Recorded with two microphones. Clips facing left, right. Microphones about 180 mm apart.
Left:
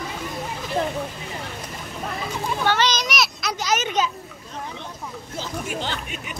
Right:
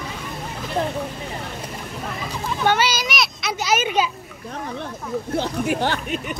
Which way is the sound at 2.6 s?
10° right (ahead or behind).